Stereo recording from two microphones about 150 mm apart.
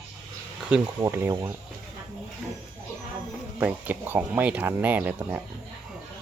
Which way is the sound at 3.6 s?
10° right (ahead or behind).